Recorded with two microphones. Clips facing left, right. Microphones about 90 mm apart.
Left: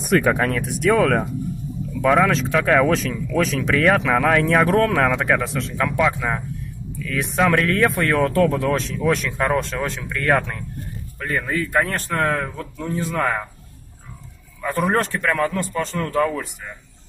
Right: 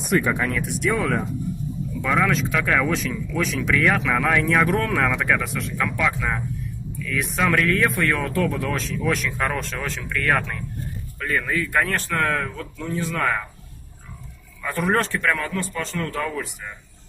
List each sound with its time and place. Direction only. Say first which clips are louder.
0.3 s speech: left 4 dB; 45° left (ahead or behind)
0.9 s speech: left 7 dB; 65° left (ahead or behind)
2.0 s a man's voice: left 5 dB; 40° left (ahead or behind)
3.1 s speech: left 4 dB; 55° left (ahead or behind)
3.5 s a man's voice: left 2 dB; 40° left (ahead or behind); by 6.4 s 25° left (ahead or behind)
7.4 s a man's voice: left 2 dB; 35° left (ahead or behind)
14.6 s a man's voice: left 2 dB; 30° left (ahead or behind)